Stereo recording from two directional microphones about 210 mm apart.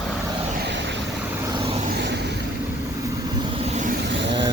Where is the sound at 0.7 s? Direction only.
55° right (ahead or behind).